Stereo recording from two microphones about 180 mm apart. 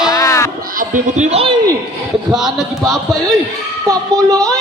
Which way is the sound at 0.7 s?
45° right (ahead or behind).